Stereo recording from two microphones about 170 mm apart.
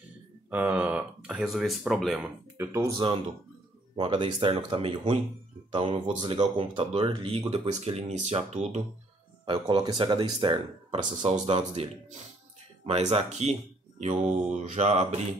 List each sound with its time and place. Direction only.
0.5 s speech: 10° right (ahead or behind)
2.5 s speech: 15° right (ahead or behind)
3.9 s speech: 30° right (ahead or behind)
9.5 s speech: 30° right (ahead or behind)
11.1 s speech: 40° right (ahead or behind)
14.5 s mantra: 45° right (ahead or behind)